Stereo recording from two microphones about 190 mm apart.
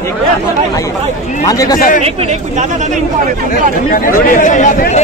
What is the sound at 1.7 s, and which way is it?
Speech, 45° left (ahead or behind).